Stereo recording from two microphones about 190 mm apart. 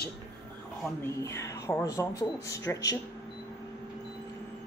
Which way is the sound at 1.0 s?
15° left (ahead or behind).